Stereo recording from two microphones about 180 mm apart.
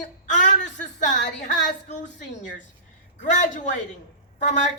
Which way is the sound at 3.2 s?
45° left (ahead or behind).